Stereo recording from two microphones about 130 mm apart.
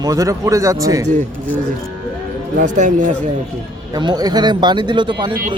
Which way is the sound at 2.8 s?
75° right (ahead or behind).